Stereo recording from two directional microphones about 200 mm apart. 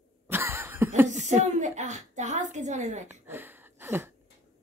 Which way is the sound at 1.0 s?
35° right (ahead or behind).